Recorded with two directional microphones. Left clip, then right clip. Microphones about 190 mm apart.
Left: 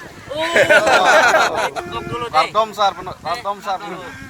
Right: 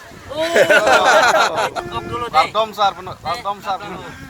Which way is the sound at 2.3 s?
60° left (ahead or behind).